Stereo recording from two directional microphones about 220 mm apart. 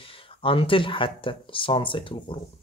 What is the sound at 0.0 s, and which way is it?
Speech, 25° left (ahead or behind).